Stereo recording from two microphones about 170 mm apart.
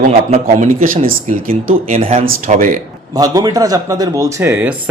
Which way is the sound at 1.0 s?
55° right (ahead or behind).